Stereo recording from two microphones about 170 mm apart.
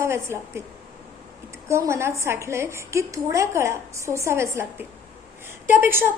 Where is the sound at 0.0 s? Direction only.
15° right (ahead or behind).